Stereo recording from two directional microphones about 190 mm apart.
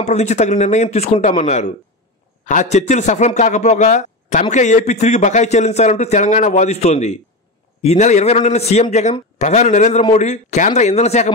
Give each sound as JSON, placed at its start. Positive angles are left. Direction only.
{"t": 0.0, "sound": "a man's voice", "side_deg": 35}